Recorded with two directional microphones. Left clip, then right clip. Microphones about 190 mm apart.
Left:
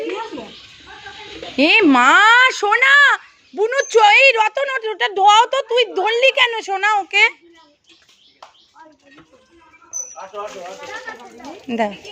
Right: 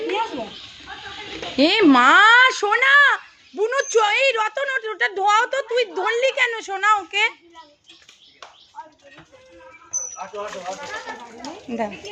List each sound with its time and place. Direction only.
1.5 s speech: 10° left (ahead or behind); by 7.3 s 30° left (ahead or behind)